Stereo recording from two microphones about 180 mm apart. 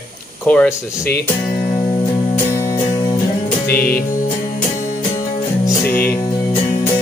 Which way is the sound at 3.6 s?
55° left (ahead or behind).